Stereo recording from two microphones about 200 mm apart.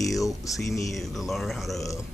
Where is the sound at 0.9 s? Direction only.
Centre (ahead or behind).